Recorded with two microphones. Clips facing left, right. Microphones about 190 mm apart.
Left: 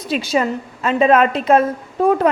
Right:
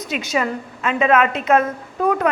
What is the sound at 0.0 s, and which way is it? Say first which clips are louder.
A woman's voice: left 4 dB; 30° left (ahead or behind).